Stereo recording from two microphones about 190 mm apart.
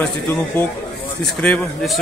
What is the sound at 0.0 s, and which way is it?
A man's voice, 10° left (ahead or behind).